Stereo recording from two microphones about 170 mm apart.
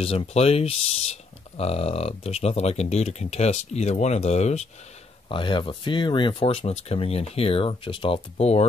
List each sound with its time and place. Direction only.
0.0 s speech: 35° left (ahead or behind)
5.3 s speech: 30° left (ahead or behind)